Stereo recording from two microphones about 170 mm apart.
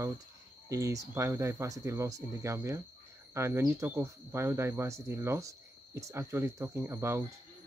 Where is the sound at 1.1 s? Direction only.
15° right (ahead or behind).